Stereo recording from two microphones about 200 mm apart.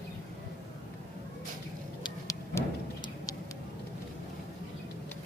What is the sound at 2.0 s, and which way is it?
Vehicle, 15° left (ahead or behind).